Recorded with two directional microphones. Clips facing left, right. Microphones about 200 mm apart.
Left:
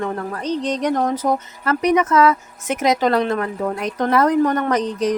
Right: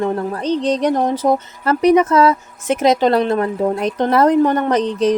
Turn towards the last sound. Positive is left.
turn(degrees=-30)  # may be behind; listen again after turning